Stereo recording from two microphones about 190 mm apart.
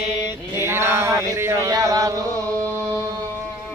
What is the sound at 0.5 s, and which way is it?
Chant, 10° right (ahead or behind).